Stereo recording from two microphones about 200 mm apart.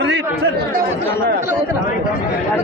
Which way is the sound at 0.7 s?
45° right (ahead or behind).